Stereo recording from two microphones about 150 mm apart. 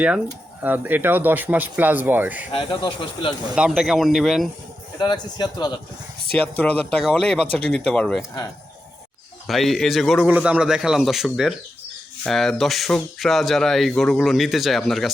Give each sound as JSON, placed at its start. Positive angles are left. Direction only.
{"t": 0.6, "sound": "speech", "side_deg": -10}
{"t": 2.5, "sound": "speech", "side_deg": 35}
{"t": 3.5, "sound": "speech", "side_deg": -5}
{"t": 4.9, "sound": "a man's voice", "side_deg": 30}
{"t": 6.3, "sound": "speech", "side_deg": 10}
{"t": 9.5, "sound": "speech", "side_deg": 0}